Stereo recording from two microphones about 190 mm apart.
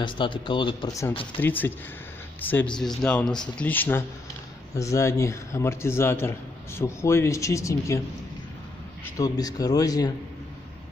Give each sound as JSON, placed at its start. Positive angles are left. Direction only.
{"t": 0.0, "sound": "a man's voice", "side_deg": 25}
{"t": 9.0, "sound": "speech", "side_deg": 20}